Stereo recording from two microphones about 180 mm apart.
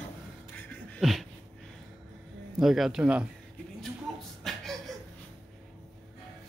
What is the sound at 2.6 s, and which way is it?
Speech, centre (ahead or behind).